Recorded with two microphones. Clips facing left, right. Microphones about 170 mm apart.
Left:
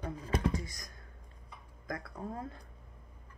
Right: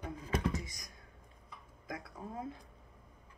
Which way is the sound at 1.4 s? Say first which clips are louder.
Left 4 dB; 5° right (ahead or behind).